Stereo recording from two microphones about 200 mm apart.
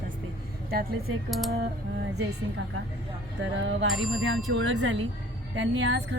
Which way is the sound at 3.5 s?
65° right (ahead or behind).